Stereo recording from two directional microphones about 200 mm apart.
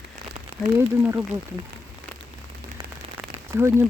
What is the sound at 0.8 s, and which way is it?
Speech, 10° right (ahead or behind).